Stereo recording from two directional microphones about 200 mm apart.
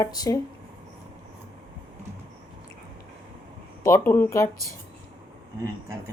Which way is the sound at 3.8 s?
15° left (ahead or behind).